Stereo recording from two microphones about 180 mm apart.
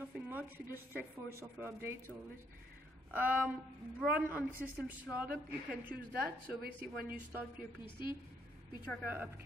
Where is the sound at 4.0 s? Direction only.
5° right (ahead or behind).